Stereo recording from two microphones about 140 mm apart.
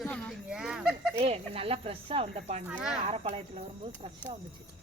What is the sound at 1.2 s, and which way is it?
Speech, 45° right (ahead or behind).